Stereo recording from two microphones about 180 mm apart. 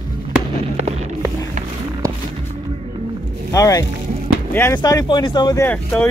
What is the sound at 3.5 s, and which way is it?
Speech, 20° left (ahead or behind).